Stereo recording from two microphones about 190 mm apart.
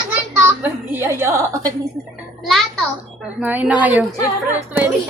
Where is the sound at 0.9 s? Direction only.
10° right (ahead or behind).